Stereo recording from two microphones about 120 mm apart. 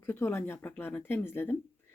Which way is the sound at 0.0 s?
20° left (ahead or behind).